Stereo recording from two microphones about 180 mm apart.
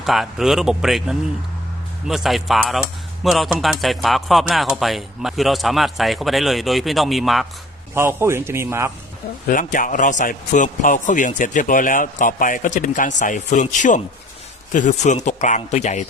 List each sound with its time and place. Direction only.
0.0 s speech: centre (ahead or behind)
7.9 s a man's voice: 15° right (ahead or behind)
9.5 s a man's voice: 45° left (ahead or behind)